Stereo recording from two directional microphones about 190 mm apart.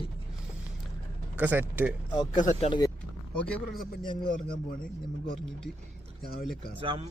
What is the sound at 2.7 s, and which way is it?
Speech, 20° left (ahead or behind).